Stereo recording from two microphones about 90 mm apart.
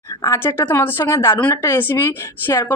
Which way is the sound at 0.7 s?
25° left (ahead or behind).